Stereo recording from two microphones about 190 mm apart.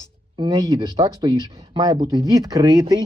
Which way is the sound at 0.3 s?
20° right (ahead or behind).